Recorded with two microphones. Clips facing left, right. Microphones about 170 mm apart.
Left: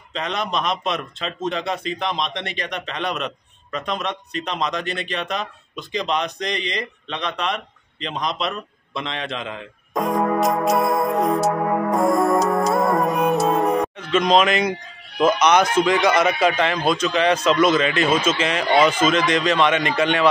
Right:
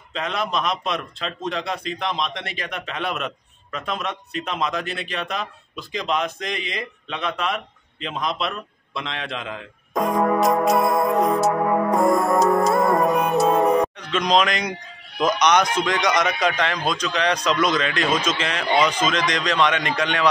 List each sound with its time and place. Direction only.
0.1 s a man's voice: centre (ahead or behind)
6.4 s a sound: 5° right (ahead or behind)
15.7 s a man's voice: 5° left (ahead or behind)